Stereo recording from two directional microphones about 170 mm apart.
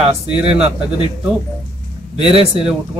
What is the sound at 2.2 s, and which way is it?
Speech, 35° right (ahead or behind).